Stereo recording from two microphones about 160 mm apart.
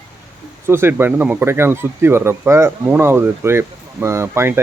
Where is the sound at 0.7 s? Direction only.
15° right (ahead or behind).